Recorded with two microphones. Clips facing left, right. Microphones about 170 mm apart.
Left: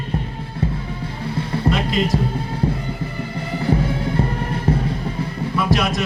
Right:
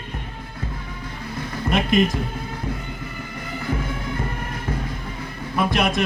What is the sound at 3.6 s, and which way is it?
Music, 30° left (ahead or behind).